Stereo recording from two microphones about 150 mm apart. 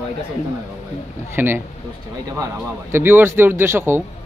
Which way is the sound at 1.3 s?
15° right (ahead or behind).